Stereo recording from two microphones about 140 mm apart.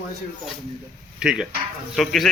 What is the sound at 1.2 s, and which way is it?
Speech, 5° right (ahead or behind).